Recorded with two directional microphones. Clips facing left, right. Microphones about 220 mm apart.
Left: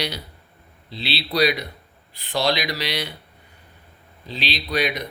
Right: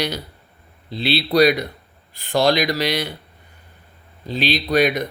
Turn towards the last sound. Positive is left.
turn(degrees=-50)  # may be behind; listen again after turning